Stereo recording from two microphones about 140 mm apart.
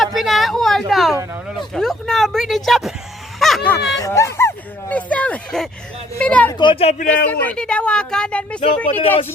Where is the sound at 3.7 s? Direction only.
20° left (ahead or behind).